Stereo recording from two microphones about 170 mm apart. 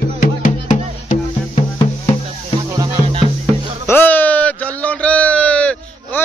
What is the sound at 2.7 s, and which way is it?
Music, 20° right (ahead or behind).